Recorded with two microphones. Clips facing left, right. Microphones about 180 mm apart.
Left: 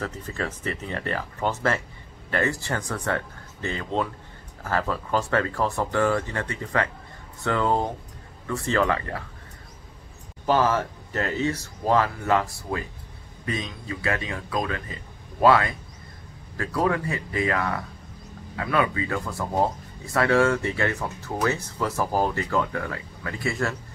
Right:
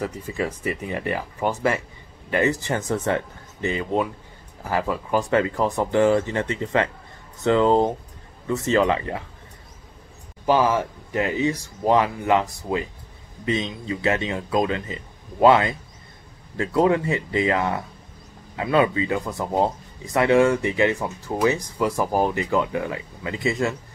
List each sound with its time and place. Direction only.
0.0 s speech: 10° right (ahead or behind)
10.4 s speech: 10° right (ahead or behind)